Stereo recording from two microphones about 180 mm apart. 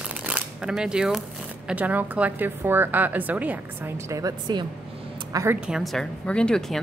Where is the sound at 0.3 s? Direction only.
5° right (ahead or behind).